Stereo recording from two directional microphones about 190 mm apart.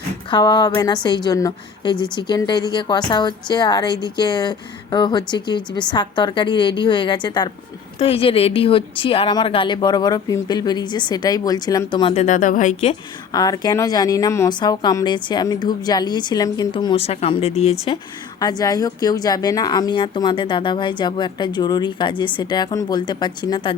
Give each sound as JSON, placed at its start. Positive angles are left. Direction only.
{"t": 0.3, "sound": "a woman's voice", "side_deg": 25}
{"t": 12.2, "sound": "speech", "side_deg": 40}
{"t": 13.3, "sound": "a woman's voice", "side_deg": 20}
{"t": 18.3, "sound": "a woman's voice", "side_deg": 20}